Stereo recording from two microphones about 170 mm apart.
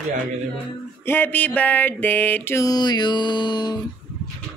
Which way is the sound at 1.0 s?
10° left (ahead or behind).